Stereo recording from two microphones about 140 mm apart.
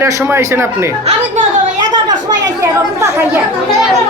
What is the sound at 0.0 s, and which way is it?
Speech, 20° right (ahead or behind).